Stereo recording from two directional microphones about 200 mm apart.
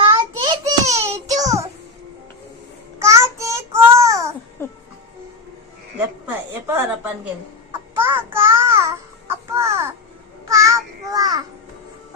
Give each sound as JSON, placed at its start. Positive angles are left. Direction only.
{"t": 0.2, "sound": "child singing", "side_deg": -25}
{"t": 3.0, "sound": "child singing", "side_deg": -15}
{"t": 4.6, "sound": "music", "side_deg": 10}
{"t": 6.2, "sound": "a sound", "side_deg": -10}
{"t": 7.7, "sound": "child singing", "side_deg": -10}